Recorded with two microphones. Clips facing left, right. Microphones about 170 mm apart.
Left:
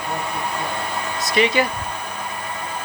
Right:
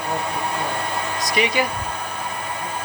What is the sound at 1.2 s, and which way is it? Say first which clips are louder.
Speech: left 3 dB; 15° right (ahead or behind).